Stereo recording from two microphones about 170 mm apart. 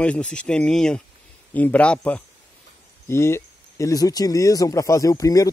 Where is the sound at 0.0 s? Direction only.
5° left (ahead or behind).